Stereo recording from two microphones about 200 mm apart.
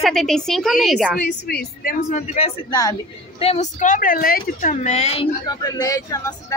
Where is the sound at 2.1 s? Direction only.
35° left (ahead or behind).